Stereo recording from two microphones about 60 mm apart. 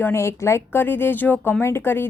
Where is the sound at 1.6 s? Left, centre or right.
Left.